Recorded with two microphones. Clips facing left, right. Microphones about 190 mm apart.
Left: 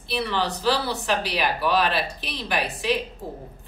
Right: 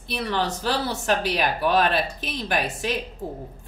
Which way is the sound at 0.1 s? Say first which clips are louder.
Even; 45° right (ahead or behind).